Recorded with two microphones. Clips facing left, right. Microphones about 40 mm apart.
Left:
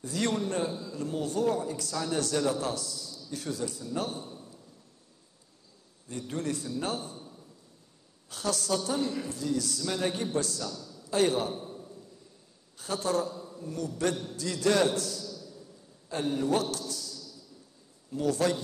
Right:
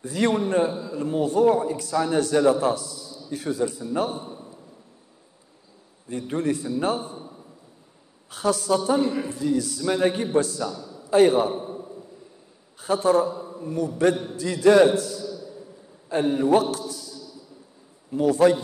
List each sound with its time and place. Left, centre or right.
0.0 s a man's voice: centre
6.0 s a man's voice: centre